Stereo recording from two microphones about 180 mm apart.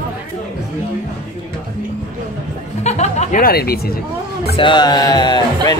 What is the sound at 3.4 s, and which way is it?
Speech, 60° left (ahead or behind).